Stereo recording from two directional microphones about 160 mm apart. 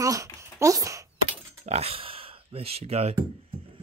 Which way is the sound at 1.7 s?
40° right (ahead or behind).